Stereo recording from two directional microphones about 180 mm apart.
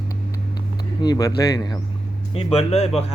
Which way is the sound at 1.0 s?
20° left (ahead or behind).